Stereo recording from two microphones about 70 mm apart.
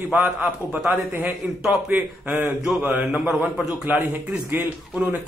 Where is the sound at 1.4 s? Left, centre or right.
Centre.